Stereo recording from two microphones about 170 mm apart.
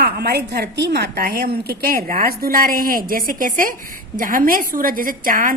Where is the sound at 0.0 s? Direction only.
70° right (ahead or behind).